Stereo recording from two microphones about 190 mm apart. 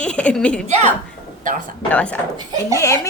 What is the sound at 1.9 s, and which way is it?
A woman's voice, 5° left (ahead or behind).